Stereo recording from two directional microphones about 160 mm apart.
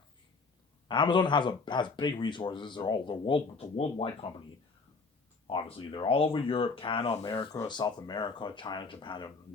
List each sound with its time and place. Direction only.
0.9 s speech: 30° left (ahead or behind)
5.5 s speech: 35° left (ahead or behind)